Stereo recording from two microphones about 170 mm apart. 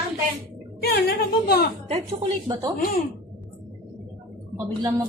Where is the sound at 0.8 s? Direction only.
75° left (ahead or behind).